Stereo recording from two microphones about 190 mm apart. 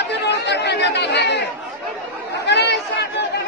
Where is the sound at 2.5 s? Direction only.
65° left (ahead or behind).